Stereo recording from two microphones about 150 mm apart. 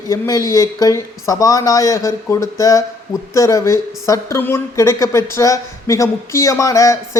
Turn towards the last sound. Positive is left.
turn(degrees=20)  # may be behind; listen again after turning